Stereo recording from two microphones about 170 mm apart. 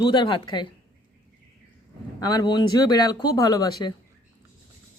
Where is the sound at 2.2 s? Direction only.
25° left (ahead or behind).